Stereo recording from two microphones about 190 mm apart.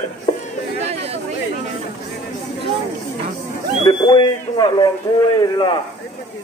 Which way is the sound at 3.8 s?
25° left (ahead or behind).